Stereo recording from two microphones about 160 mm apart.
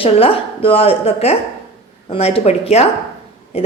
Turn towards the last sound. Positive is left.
turn(degrees=40)  # may be behind; listen again after turning